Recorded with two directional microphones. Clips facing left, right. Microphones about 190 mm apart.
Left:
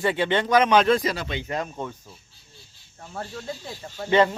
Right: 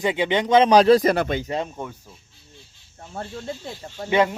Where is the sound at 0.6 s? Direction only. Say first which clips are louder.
Right 7 dB; 35° right (ahead or behind).